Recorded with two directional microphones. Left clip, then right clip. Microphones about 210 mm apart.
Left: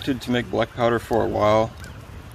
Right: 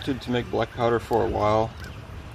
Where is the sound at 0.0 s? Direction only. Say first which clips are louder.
Left 3 dB; 45° left (ahead or behind).